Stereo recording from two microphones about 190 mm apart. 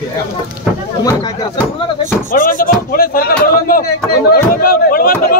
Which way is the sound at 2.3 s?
45° left (ahead or behind).